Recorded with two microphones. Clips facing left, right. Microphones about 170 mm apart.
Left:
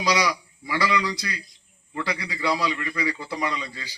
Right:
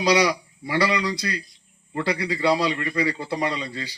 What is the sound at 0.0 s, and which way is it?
A man's voice, 30° right (ahead or behind).